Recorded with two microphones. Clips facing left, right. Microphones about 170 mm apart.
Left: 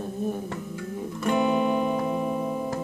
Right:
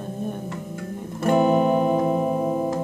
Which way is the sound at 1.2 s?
45° right (ahead or behind).